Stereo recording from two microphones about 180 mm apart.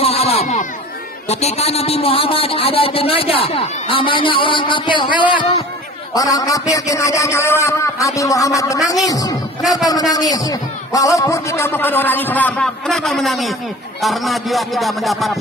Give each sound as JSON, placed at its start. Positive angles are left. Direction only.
{"t": 0.0, "sound": "a sound", "side_deg": 35}
{"t": 1.3, "sound": "a man's voice", "side_deg": 35}
{"t": 9.6, "sound": "a man's voice", "side_deg": 0}
{"t": 9.8, "sound": "a man's voice", "side_deg": 20}
{"t": 14.0, "sound": "music", "side_deg": 0}